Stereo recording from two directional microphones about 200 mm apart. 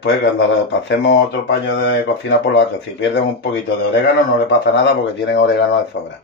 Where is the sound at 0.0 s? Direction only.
65° left (ahead or behind).